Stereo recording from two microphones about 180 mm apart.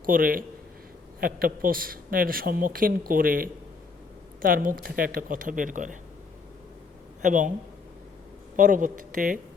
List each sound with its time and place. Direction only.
0.0 s a man's voice: 50° right (ahead or behind)
7.2 s a man's voice: 45° right (ahead or behind)
8.5 s a man's voice: 45° right (ahead or behind)